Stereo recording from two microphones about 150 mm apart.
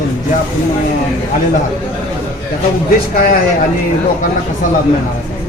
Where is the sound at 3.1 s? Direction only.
70° left (ahead or behind).